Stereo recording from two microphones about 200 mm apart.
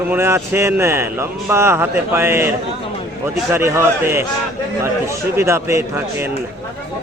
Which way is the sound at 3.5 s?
15° right (ahead or behind).